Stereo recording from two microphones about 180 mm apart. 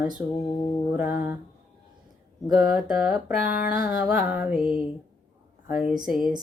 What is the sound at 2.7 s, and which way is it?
Speech, centre (ahead or behind).